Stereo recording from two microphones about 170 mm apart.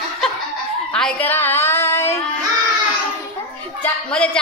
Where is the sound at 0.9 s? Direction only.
10° left (ahead or behind).